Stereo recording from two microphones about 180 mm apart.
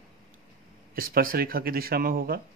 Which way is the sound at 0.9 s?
50° right (ahead or behind).